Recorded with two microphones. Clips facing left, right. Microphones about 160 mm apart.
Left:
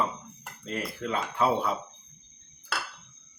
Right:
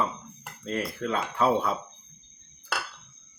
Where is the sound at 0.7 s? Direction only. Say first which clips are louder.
Right 3 dB; 15° left (ahead or behind).